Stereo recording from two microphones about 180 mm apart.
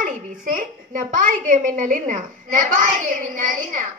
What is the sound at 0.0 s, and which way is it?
A child's voice, 50° right (ahead or behind).